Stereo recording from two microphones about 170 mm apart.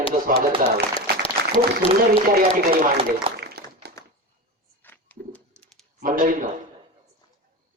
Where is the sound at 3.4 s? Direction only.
70° right (ahead or behind).